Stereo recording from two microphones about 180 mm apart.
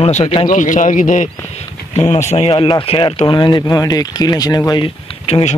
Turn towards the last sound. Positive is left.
turn(degrees=30)  # may be behind; listen again after turning